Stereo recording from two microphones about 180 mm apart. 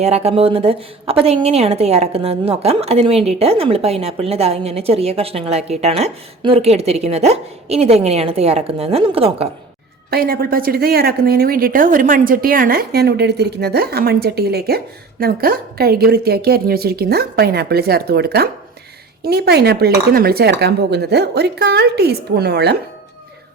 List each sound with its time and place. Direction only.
0.0 s a woman's voice: 35° right (ahead or behind)
10.1 s speech: 60° right (ahead or behind)